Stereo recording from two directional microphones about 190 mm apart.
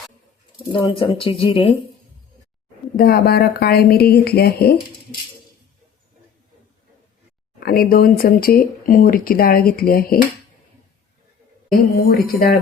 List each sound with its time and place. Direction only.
0.7 s speech: 25° left (ahead or behind)
2.9 s speech: 50° left (ahead or behind)
7.6 s speech: 50° left (ahead or behind)
12.0 s speech: 55° left (ahead or behind)